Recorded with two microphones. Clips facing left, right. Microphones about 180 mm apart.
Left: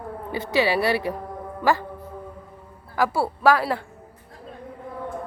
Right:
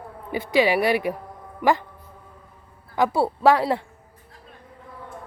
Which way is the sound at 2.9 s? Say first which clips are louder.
Right 2 dB; 20° right (ahead or behind).